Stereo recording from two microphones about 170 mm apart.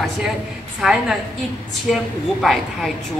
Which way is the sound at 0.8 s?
5° right (ahead or behind).